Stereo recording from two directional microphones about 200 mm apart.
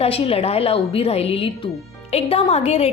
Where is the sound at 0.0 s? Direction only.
30° left (ahead or behind).